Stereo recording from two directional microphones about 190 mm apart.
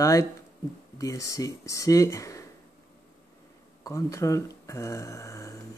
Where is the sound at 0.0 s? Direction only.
15° left (ahead or behind).